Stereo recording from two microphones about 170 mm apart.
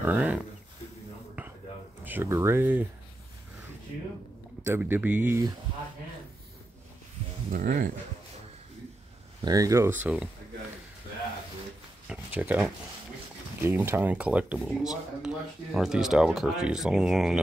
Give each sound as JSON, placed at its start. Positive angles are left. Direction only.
{"t": 0.0, "sound": "speech", "side_deg": -10}
{"t": 2.0, "sound": "speech", "side_deg": -15}
{"t": 4.6, "sound": "speech", "side_deg": -10}
{"t": 7.5, "sound": "speech", "side_deg": -50}
{"t": 9.4, "sound": "speech", "side_deg": -20}
{"t": 12.1, "sound": "speech", "side_deg": -10}